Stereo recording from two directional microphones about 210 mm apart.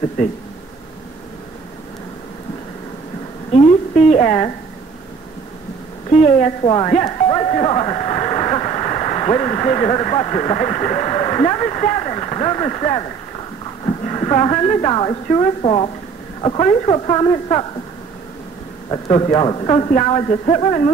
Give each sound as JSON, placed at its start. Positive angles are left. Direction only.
{"t": 3.5, "sound": "a woman's voice", "side_deg": 35}
{"t": 6.1, "sound": "speech", "side_deg": 30}
{"t": 13.8, "sound": "speech", "side_deg": 25}
{"t": 18.9, "sound": "speech", "side_deg": 25}